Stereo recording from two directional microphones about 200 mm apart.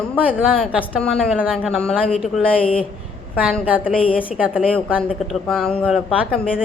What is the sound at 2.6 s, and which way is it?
Speech, 25° left (ahead or behind).